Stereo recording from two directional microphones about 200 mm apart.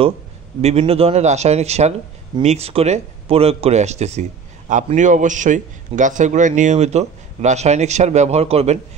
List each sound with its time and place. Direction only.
0.6 s speech: 30° right (ahead or behind)